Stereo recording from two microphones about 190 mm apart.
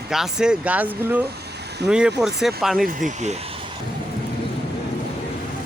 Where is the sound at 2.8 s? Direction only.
40° right (ahead or behind).